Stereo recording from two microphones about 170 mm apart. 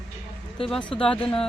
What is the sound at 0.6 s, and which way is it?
Speech, 5° left (ahead or behind).